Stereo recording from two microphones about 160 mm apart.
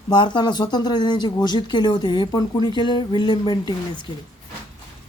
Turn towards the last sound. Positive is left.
turn(degrees=30)  # may be behind; listen again after turning